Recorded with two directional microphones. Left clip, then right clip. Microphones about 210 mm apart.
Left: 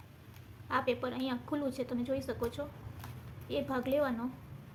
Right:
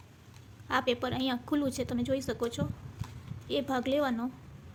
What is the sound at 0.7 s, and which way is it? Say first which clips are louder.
A woman's voice: right 3 dB; 40° right (ahead or behind).